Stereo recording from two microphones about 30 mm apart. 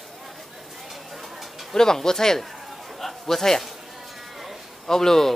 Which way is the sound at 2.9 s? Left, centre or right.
Centre.